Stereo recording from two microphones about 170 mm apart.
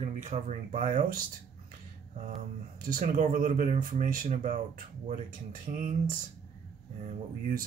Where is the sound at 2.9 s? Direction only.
50° right (ahead or behind).